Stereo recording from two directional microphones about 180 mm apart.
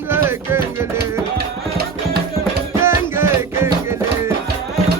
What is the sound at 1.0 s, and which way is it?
Music, 60° right (ahead or behind).